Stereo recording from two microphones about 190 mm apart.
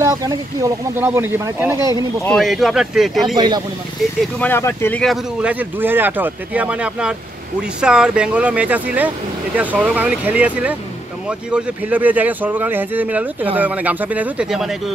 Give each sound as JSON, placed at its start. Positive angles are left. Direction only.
{"t": 0.0, "sound": "speech", "side_deg": -20}
{"t": 2.2, "sound": "speech", "side_deg": 0}
{"t": 3.3, "sound": "speech", "side_deg": -25}
{"t": 4.4, "sound": "speech", "side_deg": 10}
{"t": 5.0, "sound": "speech", "side_deg": -5}